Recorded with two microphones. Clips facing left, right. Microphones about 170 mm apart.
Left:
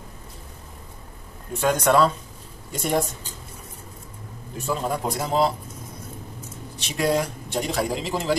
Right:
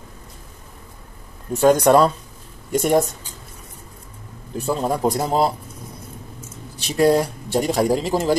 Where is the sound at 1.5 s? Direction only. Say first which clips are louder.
Right 6 dB; 40° right (ahead or behind).